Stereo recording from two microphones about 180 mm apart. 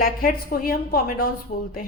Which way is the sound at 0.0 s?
55° left (ahead or behind).